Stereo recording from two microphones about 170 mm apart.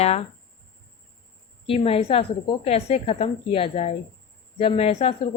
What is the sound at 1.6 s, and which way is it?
Speech, 35° left (ahead or behind).